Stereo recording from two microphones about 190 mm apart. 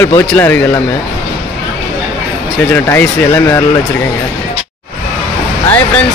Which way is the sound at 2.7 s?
10° left (ahead or behind).